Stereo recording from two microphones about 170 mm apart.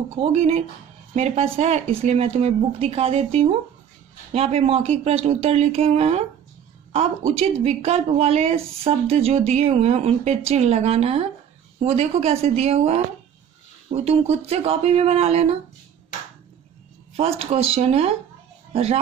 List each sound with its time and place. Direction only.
0.1 s speech: 35° right (ahead or behind)
7.3 s speech: 40° right (ahead or behind)
17.2 s speech: 35° right (ahead or behind)